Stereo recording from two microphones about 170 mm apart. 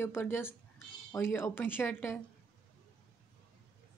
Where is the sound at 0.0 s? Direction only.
15° left (ahead or behind).